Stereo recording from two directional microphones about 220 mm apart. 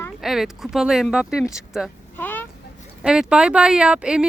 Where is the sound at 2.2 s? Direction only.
10° left (ahead or behind).